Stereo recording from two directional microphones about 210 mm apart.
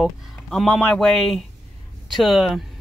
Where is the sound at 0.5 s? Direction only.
Centre (ahead or behind).